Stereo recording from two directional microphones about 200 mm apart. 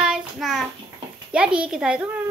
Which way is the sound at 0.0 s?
Centre (ahead or behind).